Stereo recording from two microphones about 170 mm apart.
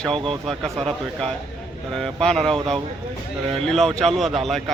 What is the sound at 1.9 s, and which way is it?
A man's voice, 5° left (ahead or behind).